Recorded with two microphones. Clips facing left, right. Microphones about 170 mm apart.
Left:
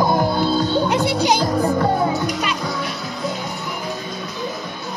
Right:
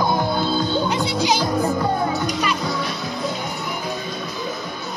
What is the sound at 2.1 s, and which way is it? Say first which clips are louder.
Music: left 1 dB; 15° left (ahead or behind).